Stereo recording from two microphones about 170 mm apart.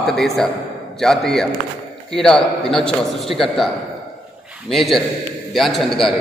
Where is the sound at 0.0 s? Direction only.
Centre (ahead or behind).